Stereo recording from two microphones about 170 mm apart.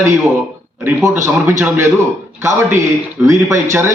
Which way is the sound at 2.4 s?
15° right (ahead or behind).